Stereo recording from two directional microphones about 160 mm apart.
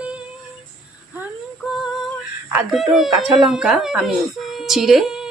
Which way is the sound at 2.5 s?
Centre (ahead or behind).